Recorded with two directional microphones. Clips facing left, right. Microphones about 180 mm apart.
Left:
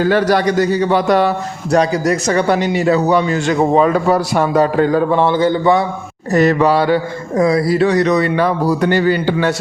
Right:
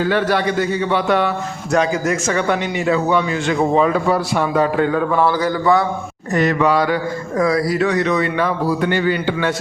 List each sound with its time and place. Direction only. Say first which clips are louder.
0.0 s a man's voice: left 4 dB; 40° left (ahead or behind); by 5.8 s 25° left (ahead or behind)
6.3 s a man's voice: left 4 dB; 35° left (ahead or behind)